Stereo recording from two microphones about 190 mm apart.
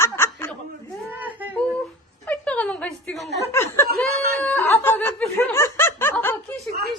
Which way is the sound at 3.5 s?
15° left (ahead or behind).